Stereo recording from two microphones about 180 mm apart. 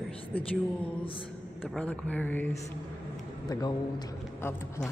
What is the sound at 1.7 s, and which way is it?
Speech, 5° left (ahead or behind).